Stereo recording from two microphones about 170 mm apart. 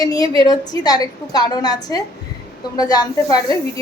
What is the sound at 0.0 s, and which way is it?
Speech, 20° left (ahead or behind).